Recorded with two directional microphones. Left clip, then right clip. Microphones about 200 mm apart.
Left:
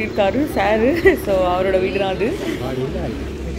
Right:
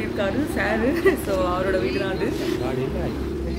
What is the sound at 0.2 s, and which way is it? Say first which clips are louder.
A woman's voice: left 7 dB; 20° left (ahead or behind).